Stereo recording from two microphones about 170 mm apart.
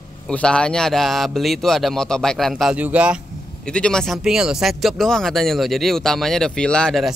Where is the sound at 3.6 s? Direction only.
5° left (ahead or behind).